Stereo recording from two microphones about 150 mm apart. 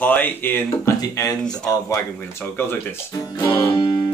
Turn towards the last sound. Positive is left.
turn(degrees=30)  # may be behind; listen again after turning